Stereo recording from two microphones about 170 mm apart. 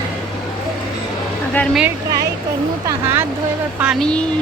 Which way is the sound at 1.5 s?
5° left (ahead or behind).